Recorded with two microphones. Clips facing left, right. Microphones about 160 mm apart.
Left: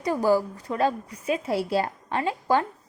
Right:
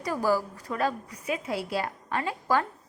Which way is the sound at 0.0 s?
20° left (ahead or behind).